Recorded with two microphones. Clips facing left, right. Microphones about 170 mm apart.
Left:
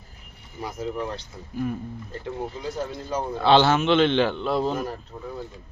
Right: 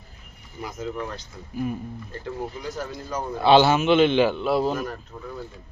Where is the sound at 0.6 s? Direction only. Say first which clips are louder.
Left 1 dB; 30° left (ahead or behind).